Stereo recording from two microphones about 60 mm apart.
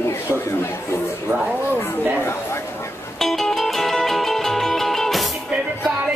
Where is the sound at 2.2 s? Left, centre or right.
Left.